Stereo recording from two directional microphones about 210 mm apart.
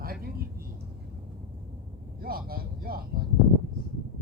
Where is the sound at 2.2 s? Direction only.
45° right (ahead or behind).